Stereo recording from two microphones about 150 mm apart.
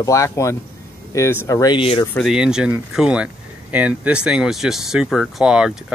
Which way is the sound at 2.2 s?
5° right (ahead or behind).